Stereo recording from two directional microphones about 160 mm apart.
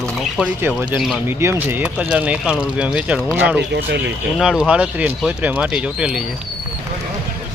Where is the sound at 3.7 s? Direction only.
90° right.